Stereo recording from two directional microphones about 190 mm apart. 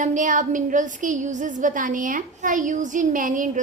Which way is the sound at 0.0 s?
40° right (ahead or behind).